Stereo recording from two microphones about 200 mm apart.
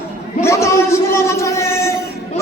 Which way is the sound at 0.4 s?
15° left (ahead or behind).